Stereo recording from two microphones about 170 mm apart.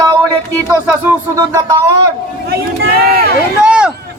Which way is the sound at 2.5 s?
65° right (ahead or behind).